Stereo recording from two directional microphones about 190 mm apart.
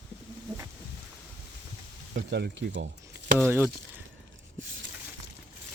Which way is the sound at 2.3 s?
65° right (ahead or behind).